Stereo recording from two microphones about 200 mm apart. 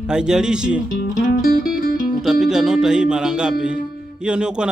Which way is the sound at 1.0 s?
45° left (ahead or behind).